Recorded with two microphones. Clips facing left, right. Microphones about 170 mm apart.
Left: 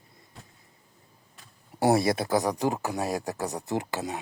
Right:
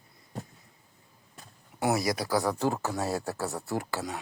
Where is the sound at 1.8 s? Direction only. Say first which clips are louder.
Left 5 dB; 30° left (ahead or behind).